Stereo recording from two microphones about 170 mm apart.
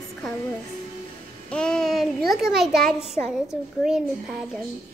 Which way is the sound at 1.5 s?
5° left (ahead or behind).